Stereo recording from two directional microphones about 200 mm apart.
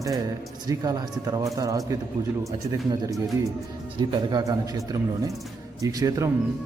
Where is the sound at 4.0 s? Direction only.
20° right (ahead or behind).